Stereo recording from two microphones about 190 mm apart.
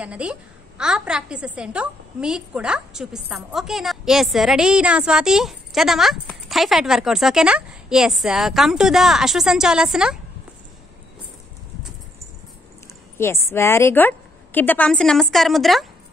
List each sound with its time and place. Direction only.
0.0 s a woman's voice: 5° right (ahead or behind)
13.5 s a woman's voice: 15° left (ahead or behind)